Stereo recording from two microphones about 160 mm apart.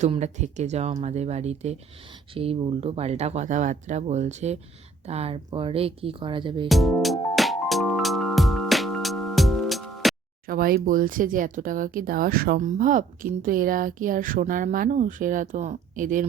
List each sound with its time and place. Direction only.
0.1 s speech: 45° right (ahead or behind)
6.7 s music: centre (ahead or behind)
10.4 s speech: 65° right (ahead or behind)